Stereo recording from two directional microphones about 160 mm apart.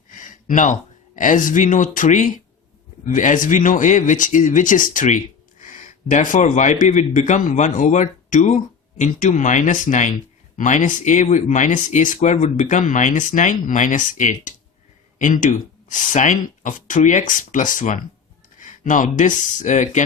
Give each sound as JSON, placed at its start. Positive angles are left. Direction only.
{"t": 0.3, "sound": "a man's voice", "side_deg": 55}